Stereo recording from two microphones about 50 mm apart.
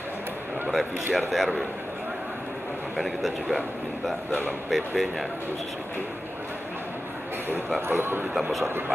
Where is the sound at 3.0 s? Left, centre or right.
Centre.